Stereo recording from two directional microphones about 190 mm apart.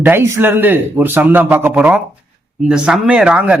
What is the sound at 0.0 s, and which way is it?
A man's voice, 10° right (ahead or behind).